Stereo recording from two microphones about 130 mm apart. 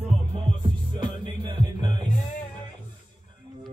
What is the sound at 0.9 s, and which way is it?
Music, 40° right (ahead or behind).